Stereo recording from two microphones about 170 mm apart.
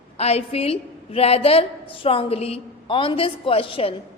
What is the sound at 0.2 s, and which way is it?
A woman's voice, 35° left (ahead or behind).